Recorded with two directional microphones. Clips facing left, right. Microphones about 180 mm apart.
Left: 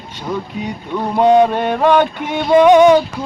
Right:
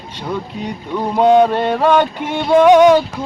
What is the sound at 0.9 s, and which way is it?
Speech, 15° right (ahead or behind).